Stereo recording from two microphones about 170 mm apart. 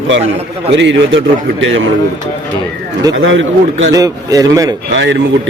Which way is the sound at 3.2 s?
90° right.